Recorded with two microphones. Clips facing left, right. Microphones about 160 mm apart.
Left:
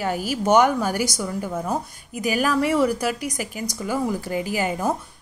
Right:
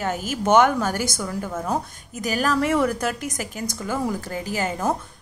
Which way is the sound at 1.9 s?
40° right (ahead or behind).